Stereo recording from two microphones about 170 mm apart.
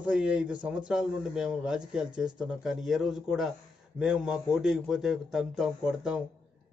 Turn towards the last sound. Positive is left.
turn(degrees=-5)  # may be behind; listen again after turning